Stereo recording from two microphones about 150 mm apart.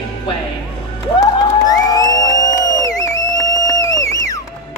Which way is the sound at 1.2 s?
25° left (ahead or behind).